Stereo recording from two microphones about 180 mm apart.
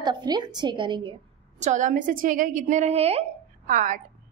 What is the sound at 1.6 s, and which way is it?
A woman's voice, 40° right (ahead or behind).